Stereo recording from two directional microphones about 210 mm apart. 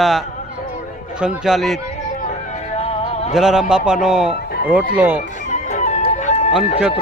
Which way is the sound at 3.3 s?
Centre (ahead or behind).